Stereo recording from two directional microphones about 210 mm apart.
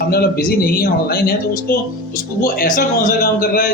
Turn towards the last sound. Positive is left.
turn(degrees=45)  # may be behind; listen again after turning